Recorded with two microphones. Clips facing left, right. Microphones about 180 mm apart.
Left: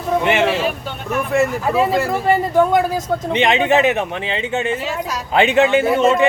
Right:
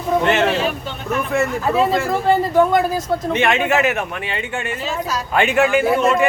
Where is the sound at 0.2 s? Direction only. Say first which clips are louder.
Left 1 dB; 10° left (ahead or behind).